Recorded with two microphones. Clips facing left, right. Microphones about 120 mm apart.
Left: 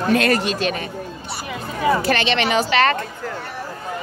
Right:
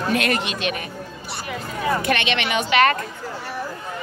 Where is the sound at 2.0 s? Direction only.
35° left (ahead or behind).